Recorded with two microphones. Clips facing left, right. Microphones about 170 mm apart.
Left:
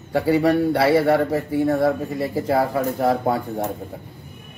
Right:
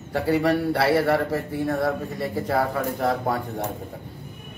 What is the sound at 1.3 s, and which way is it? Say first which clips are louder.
Speech: left 5 dB; 25° left (ahead or behind).